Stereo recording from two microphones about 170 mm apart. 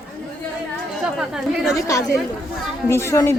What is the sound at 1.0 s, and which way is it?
Speech, 5° right (ahead or behind).